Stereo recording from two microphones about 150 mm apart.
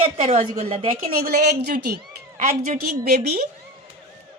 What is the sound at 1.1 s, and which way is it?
A woman's voice, 90° right.